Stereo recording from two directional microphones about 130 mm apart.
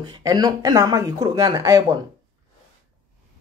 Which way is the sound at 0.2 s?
30° right (ahead or behind).